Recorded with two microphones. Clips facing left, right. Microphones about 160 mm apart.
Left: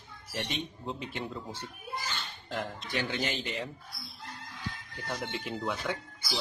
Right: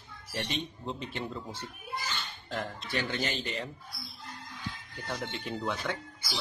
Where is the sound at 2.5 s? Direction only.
15° left (ahead or behind).